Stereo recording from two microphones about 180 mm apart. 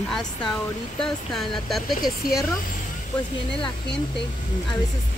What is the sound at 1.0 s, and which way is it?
Speech, centre (ahead or behind).